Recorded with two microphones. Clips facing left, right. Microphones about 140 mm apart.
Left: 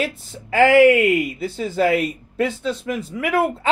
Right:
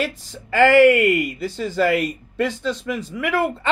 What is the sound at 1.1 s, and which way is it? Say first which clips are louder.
Speech: left 1 dB; centre (ahead or behind).